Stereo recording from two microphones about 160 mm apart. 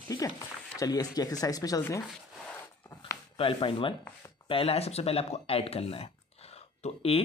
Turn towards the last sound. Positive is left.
turn(degrees=35)  # may be behind; listen again after turning